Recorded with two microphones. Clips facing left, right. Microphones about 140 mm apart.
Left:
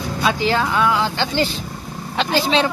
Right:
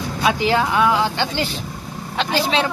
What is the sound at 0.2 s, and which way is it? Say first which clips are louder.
Speech: right 1 dB; 15° right (ahead or behind).